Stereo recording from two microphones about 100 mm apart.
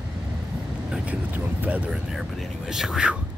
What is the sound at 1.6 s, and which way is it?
Speech, 15° right (ahead or behind).